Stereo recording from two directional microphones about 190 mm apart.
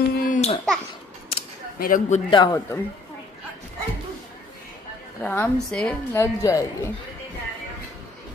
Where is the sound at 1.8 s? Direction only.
45° left (ahead or behind).